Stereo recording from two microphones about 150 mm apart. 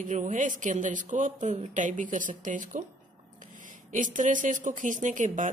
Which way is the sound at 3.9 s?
60° right (ahead or behind).